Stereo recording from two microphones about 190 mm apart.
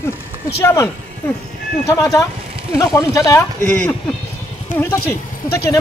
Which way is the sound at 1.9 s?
15° left (ahead or behind).